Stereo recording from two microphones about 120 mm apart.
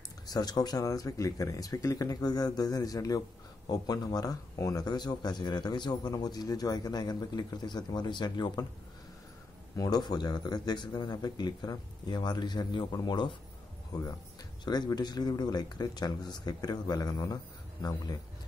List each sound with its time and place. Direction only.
0.3 s speech: 35° left (ahead or behind)
9.8 s speech: 35° left (ahead or behind)